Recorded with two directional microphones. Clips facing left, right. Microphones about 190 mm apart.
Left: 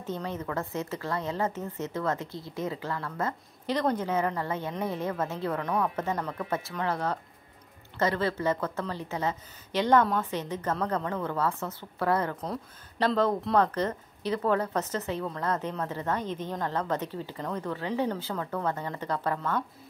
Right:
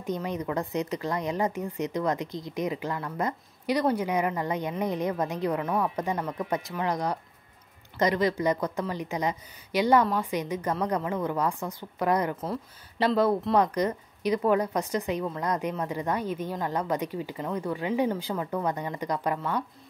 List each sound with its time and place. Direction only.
0.0 s a woman's voice: 15° right (ahead or behind)